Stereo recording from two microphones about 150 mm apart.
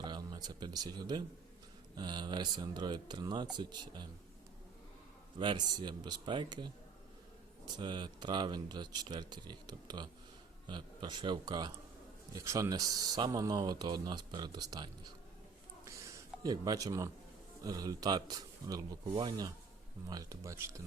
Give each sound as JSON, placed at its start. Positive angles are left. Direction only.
{"t": 0.0, "sound": "speech", "side_deg": -30}
{"t": 5.4, "sound": "speech", "side_deg": -30}
{"t": 7.8, "sound": "speech", "side_deg": -30}
{"t": 15.8, "sound": "a sound", "side_deg": -20}
{"t": 17.6, "sound": "speech", "side_deg": -25}